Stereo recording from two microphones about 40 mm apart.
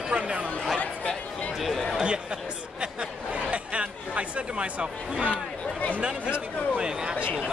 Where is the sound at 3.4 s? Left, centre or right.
Right.